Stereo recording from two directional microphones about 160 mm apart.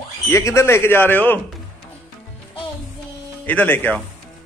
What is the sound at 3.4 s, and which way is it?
Speech, 10° left (ahead or behind).